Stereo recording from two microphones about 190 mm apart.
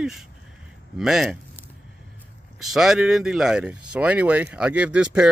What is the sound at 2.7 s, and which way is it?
Speech, centre (ahead or behind).